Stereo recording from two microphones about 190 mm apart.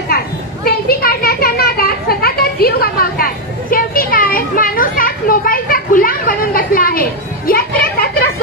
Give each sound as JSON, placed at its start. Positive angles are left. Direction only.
{"t": 0.7, "sound": "children playing", "side_deg": 55}